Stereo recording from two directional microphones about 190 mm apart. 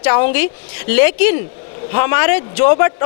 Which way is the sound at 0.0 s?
15° left (ahead or behind).